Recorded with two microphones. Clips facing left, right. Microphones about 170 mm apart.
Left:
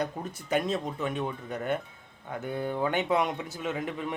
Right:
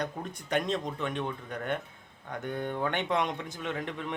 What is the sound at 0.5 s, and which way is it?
Speech, 5° left (ahead or behind).